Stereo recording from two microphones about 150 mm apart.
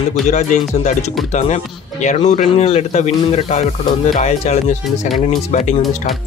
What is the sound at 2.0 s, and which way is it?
Speech, 55° left (ahead or behind).